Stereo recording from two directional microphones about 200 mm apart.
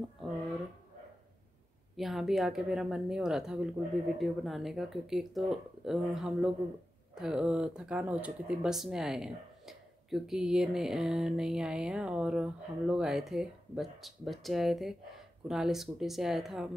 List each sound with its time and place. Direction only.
2.0 s speech: centre (ahead or behind)